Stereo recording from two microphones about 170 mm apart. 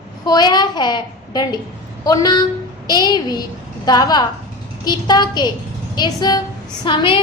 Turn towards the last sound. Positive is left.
turn(degrees=30)  # may be behind; listen again after turning